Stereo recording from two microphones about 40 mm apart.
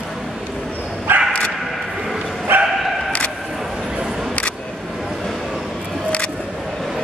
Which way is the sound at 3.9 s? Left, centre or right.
Centre.